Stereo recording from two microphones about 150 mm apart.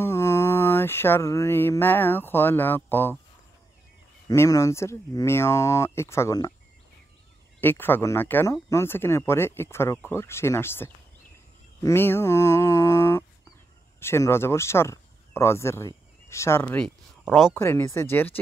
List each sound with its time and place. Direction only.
0.0 s mantra: 15° left (ahead or behind)
4.3 s speech: 20° left (ahead or behind)
7.6 s speech: 15° left (ahead or behind)